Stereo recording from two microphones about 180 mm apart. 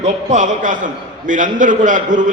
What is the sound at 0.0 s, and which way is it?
A man's voice, 40° right (ahead or behind).